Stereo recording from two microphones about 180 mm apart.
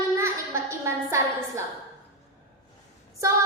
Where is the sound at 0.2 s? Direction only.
15° right (ahead or behind).